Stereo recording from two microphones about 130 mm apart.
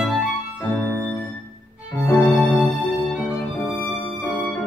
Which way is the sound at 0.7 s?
15° left (ahead or behind).